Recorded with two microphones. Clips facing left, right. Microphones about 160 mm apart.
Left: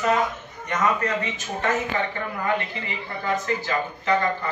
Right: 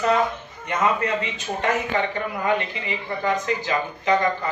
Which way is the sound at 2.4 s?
20° right (ahead or behind).